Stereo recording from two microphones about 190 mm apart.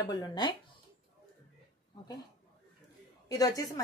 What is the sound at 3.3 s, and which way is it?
Speech, 20° left (ahead or behind).